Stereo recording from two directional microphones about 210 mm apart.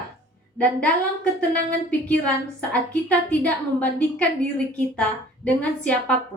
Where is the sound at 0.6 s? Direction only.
5° left (ahead or behind).